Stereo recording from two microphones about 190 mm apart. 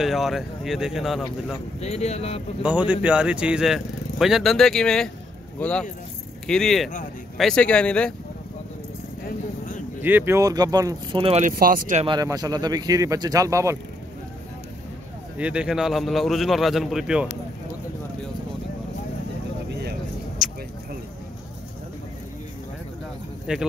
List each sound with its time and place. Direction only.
0.0 s speech: centre (ahead or behind)
1.8 s speech: 35° left (ahead or behind)
2.6 s speech: 5° right (ahead or behind)
10.0 s speech: 10° right (ahead or behind); by 11.4 s 30° right (ahead or behind)
11.4 s speech: 50° right (ahead or behind)
12.0 s speech: 20° right (ahead or behind)
15.3 s speech: 5° right (ahead or behind)
20.4 s a sound: centre (ahead or behind)
23.5 s speech: 5° right (ahead or behind)